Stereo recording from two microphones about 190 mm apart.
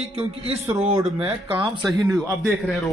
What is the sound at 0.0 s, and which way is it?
A man's voice, 35° right (ahead or behind).